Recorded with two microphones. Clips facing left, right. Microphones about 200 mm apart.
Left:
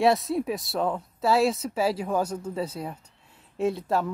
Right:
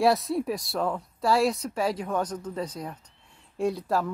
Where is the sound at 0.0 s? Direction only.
Centre (ahead or behind).